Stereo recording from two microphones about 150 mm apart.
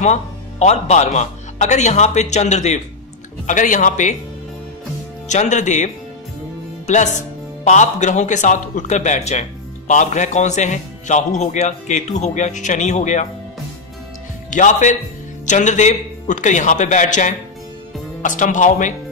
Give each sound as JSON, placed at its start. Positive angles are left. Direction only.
{"t": 0.0, "sound": "a man's voice", "side_deg": 50}
{"t": 5.3, "sound": "speech", "side_deg": 55}
{"t": 7.6, "sound": "speech", "side_deg": 55}
{"t": 14.5, "sound": "a man's voice", "side_deg": 55}